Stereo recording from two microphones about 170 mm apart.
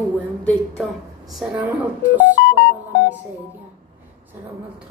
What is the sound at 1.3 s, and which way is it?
Speech, 10° right (ahead or behind).